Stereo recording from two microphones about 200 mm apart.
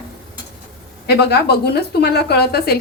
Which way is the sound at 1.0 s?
55° left (ahead or behind).